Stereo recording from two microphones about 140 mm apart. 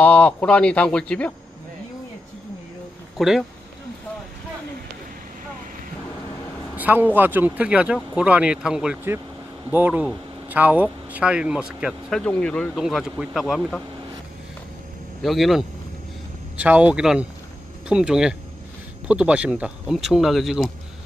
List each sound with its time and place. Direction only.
0.0 s a man's voice: 10° left (ahead or behind)
3.2 s speech: centre (ahead or behind)
6.8 s vehicle: 15° right (ahead or behind)
7.2 s speech: 15° right (ahead or behind)
12.2 s a man's voice: 5° left (ahead or behind)
12.7 s speech: 5° right (ahead or behind)
15.2 s speech: centre (ahead or behind)